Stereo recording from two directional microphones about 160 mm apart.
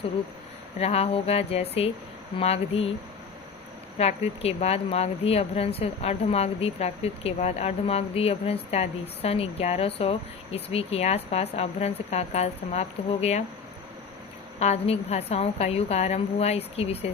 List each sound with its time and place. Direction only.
0.8 s speech: 40° left (ahead or behind)
3.9 s speech: 40° left (ahead or behind)
14.6 s speech: 45° left (ahead or behind)